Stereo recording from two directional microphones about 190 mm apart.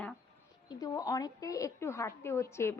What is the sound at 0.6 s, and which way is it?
A woman's voice, 20° left (ahead or behind).